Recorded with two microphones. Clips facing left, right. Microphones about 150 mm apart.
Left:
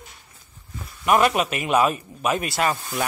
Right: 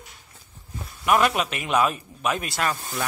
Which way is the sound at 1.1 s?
Centre (ahead or behind).